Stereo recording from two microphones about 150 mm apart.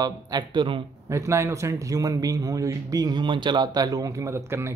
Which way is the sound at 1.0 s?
20° right (ahead or behind).